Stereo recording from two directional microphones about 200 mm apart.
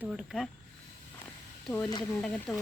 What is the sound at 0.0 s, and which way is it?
Speech, centre (ahead or behind).